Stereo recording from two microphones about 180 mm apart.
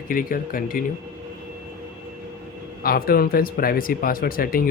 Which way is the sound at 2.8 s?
55° left (ahead or behind).